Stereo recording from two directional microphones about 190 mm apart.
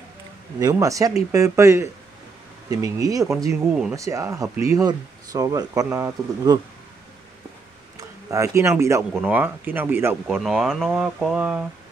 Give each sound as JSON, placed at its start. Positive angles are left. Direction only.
{"t": 0.6, "sound": "speech", "side_deg": -20}
{"t": 8.0, "sound": "speech", "side_deg": -15}
{"t": 10.2, "sound": "speech", "side_deg": 0}